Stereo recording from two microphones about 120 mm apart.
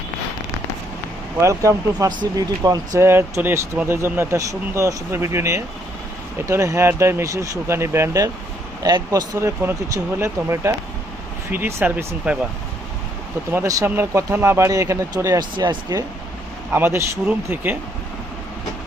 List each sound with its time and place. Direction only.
1.4 s speech: 25° right (ahead or behind)
8.8 s speech: 35° right (ahead or behind); by 12.4 s 10° right (ahead or behind)
13.5 s speech: 25° right (ahead or behind)
15.5 s speech: 40° right (ahead or behind)
16.7 s speech: 20° right (ahead or behind)